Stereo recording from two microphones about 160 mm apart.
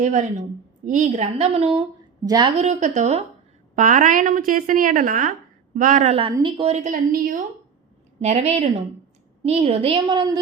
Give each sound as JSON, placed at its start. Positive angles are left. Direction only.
{"t": 0.0, "sound": "a woman's voice", "side_deg": -45}
{"t": 2.2, "sound": "a woman's voice", "side_deg": -20}
{"t": 2.6, "sound": "a woman's voice", "side_deg": -45}
{"t": 6.8, "sound": "a woman's voice", "side_deg": -60}
{"t": 8.2, "sound": "a woman's voice", "side_deg": -45}